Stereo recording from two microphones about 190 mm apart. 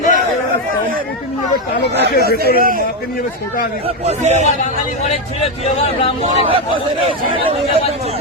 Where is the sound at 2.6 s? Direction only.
50° right (ahead or behind).